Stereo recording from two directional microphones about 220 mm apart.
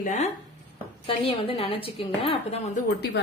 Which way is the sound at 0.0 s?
35° left (ahead or behind).